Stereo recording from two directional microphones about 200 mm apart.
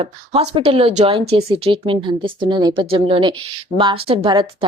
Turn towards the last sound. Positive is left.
turn(degrees=-25)  # may be behind; listen again after turning